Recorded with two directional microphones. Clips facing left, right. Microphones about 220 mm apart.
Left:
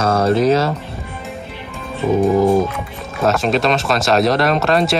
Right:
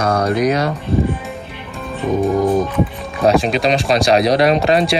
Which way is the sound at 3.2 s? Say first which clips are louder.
Right 2 dB; centre (ahead or behind).